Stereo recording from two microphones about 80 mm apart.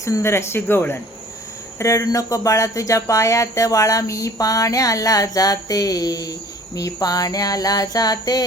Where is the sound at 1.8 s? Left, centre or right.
Left.